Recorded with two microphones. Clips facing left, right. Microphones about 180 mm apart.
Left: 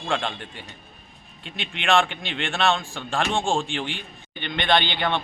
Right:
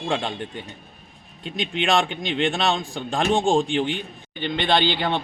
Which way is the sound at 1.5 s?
35° right (ahead or behind).